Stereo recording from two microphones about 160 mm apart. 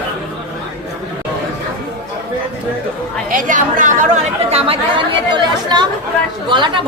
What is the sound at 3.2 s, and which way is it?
Speech, 55° right (ahead or behind).